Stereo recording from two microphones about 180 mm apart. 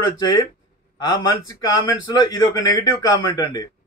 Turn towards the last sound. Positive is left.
turn(degrees=25)  # may be behind; listen again after turning